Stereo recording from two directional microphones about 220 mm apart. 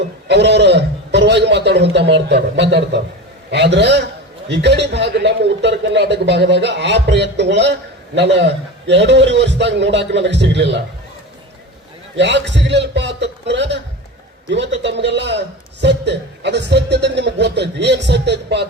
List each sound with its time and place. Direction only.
0.3 s a man's voice: 50° right (ahead or behind)
12.1 s a man's voice: 55° right (ahead or behind)